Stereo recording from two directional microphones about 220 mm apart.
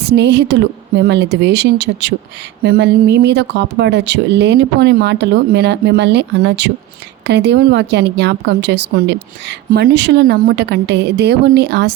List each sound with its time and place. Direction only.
0.0 s a woman's voice: 50° right (ahead or behind)